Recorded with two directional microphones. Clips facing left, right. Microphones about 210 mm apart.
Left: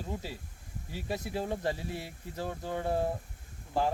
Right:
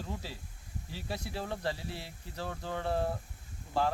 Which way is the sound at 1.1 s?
20° left (ahead or behind).